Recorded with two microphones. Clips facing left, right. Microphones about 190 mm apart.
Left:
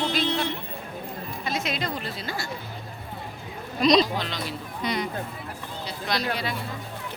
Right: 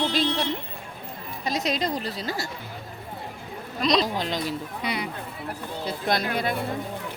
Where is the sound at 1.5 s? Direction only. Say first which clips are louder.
Right 4 dB; 35° right (ahead or behind).